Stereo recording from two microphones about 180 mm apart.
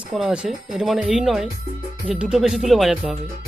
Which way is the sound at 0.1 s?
5° right (ahead or behind).